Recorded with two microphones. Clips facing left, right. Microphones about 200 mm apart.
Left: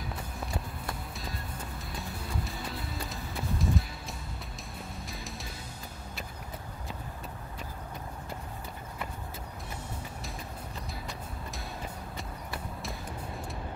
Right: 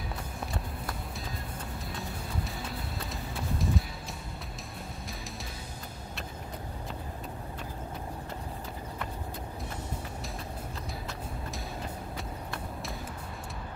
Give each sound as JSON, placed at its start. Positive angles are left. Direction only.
{"t": 3.1, "sound": "music", "side_deg": 0}